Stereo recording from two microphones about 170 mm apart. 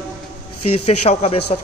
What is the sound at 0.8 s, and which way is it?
Speech, 35° left (ahead or behind).